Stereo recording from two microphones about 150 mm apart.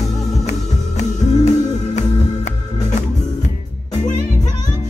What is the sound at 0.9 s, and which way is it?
Music, 50° left (ahead or behind).